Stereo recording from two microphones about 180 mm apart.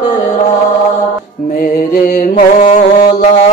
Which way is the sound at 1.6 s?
50° left (ahead or behind).